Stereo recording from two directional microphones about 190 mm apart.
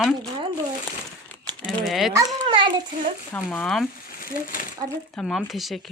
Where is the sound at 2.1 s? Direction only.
25° right (ahead or behind).